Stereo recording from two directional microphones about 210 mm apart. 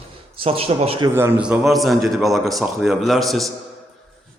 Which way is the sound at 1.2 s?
10° right (ahead or behind).